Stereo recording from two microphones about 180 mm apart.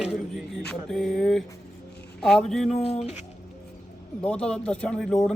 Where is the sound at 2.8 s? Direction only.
35° left (ahead or behind).